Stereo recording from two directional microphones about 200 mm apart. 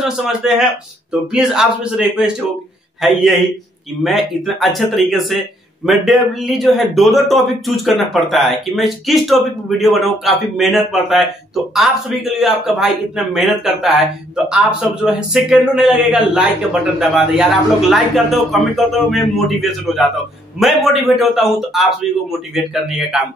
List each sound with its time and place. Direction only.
0.0 s a man's voice: centre (ahead or behind)